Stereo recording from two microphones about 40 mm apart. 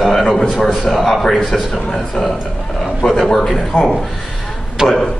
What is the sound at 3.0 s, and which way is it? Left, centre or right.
Speech, left.